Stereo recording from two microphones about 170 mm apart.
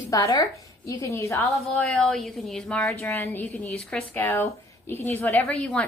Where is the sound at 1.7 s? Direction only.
5° left (ahead or behind).